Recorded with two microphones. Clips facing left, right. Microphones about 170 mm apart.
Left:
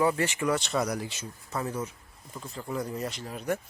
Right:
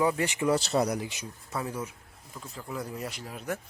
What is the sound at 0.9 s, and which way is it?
Speech, 15° right (ahead or behind).